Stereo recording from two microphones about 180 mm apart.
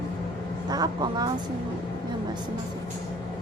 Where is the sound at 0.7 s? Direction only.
20° right (ahead or behind).